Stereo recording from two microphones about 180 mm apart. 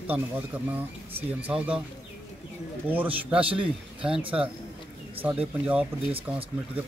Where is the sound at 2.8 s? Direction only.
10° right (ahead or behind).